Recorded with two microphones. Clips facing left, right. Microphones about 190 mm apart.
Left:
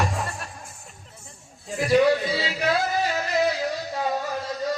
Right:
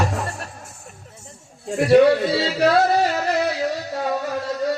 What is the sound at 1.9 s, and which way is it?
Music, 70° right (ahead or behind).